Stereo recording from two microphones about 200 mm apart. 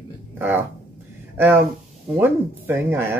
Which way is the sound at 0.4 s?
10° right (ahead or behind).